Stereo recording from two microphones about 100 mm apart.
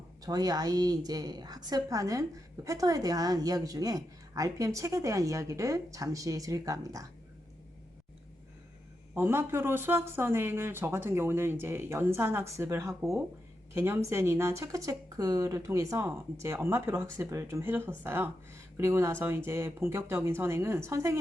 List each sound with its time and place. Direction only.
0.2 s speech: 40° right (ahead or behind)
9.1 s speech: 25° right (ahead or behind)